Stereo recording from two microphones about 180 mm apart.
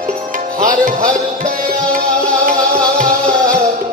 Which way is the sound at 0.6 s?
45° right (ahead or behind).